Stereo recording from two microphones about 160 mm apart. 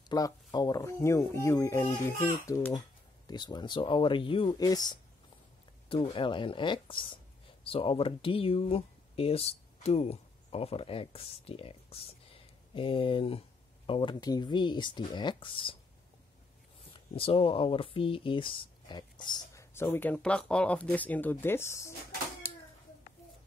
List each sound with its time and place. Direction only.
0.1 s speech: 25° left (ahead or behind)
5.9 s speech: 35° left (ahead or behind)
16.9 s speech: 35° left (ahead or behind); by 21.9 s 15° left (ahead or behind)